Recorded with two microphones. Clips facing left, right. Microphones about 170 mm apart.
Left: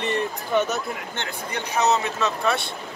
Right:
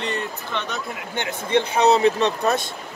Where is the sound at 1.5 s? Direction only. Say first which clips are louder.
Right 5 dB; 30° right (ahead or behind).